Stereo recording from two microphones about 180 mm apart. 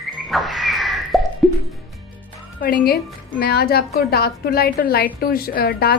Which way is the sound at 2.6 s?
60° left (ahead or behind).